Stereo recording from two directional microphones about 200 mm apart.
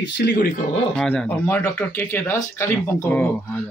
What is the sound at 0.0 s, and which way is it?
Speech, 50° left (ahead or behind).